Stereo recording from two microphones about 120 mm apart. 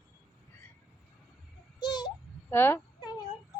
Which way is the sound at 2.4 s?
20° left (ahead or behind).